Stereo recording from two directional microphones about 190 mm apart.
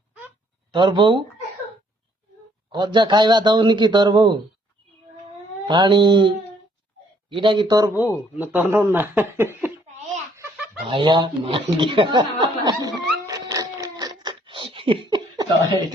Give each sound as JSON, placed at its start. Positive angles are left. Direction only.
{"t": 0.7, "sound": "speech", "side_deg": -25}
{"t": 2.7, "sound": "speech", "side_deg": -25}
{"t": 5.6, "sound": "speech", "side_deg": -25}
{"t": 7.9, "sound": "speech", "side_deg": -10}
{"t": 10.8, "sound": "speech", "side_deg": -25}
{"t": 12.9, "sound": "music", "side_deg": -20}
{"t": 14.2, "sound": "a sound", "side_deg": -25}